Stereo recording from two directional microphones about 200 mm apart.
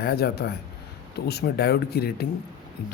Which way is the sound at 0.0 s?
50° left (ahead or behind).